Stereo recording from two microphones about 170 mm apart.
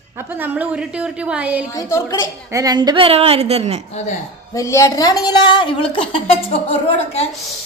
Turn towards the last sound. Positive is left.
turn(degrees=40)  # may be behind; listen again after turning